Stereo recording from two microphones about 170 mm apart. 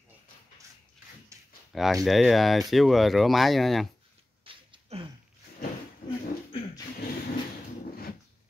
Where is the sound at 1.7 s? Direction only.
Centre (ahead or behind).